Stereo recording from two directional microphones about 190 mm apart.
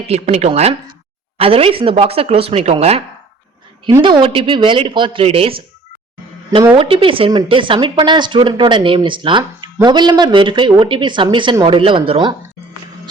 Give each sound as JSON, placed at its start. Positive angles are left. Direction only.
{"t": 0.1, "sound": "speech", "side_deg": -35}
{"t": 4.0, "sound": "speech", "side_deg": -25}
{"t": 6.7, "sound": "speech", "side_deg": -30}